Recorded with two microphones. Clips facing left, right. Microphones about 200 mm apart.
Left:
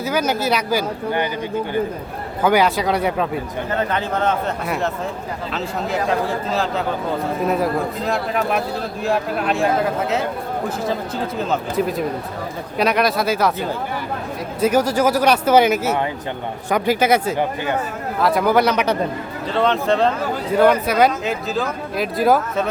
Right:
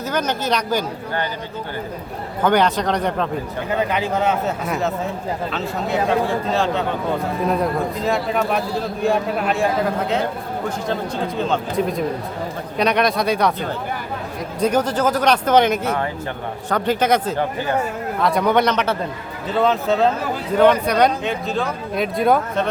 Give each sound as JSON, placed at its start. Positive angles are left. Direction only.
{"t": 0.0, "sound": "speech", "side_deg": 10}
{"t": 2.4, "sound": "speech", "side_deg": 10}
{"t": 3.7, "sound": "a man's voice", "side_deg": -10}
{"t": 4.6, "sound": "speech", "side_deg": 0}
{"t": 19.5, "sound": "speech", "side_deg": -5}